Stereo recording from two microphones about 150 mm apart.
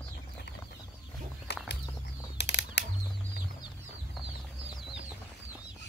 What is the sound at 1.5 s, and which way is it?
Bird, 90° left.